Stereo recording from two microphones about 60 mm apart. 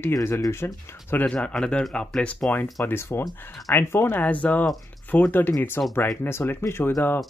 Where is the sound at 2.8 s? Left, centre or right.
Left.